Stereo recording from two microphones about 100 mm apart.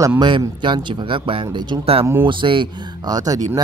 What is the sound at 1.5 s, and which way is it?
Speech, 50° right (ahead or behind).